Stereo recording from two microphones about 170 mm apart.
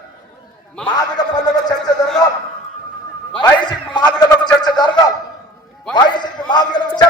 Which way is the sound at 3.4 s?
25° left (ahead or behind).